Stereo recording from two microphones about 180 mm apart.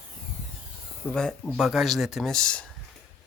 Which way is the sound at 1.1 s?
5° left (ahead or behind).